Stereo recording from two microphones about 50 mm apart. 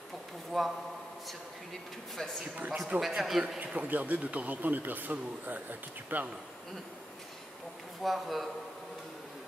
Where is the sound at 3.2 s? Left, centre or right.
Centre.